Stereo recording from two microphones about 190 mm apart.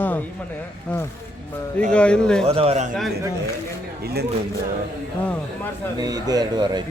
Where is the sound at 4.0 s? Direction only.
55° right (ahead or behind).